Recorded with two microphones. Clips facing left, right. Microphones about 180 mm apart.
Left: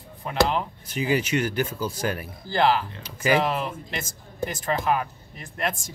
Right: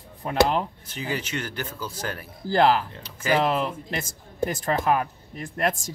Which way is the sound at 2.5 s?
45° right (ahead or behind).